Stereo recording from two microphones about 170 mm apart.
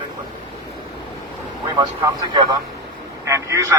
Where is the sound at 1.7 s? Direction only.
25° right (ahead or behind).